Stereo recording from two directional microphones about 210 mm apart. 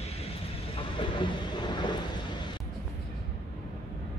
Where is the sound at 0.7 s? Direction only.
25° left (ahead or behind).